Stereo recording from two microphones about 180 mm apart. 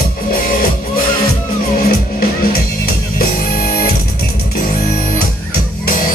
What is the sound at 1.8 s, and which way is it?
Music, 60° left (ahead or behind).